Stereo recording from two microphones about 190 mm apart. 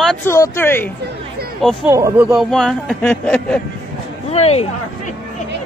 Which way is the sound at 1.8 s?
10° right (ahead or behind).